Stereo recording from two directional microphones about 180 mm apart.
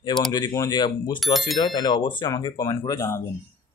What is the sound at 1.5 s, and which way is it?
A man's voice, 25° left (ahead or behind).